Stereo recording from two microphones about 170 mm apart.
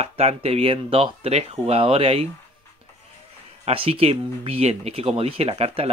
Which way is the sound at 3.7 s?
35° right (ahead or behind).